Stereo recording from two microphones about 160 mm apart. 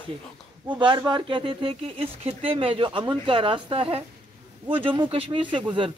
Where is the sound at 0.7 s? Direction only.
30° right (ahead or behind).